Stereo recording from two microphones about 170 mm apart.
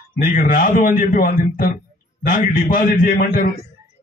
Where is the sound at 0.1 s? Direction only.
55° left (ahead or behind).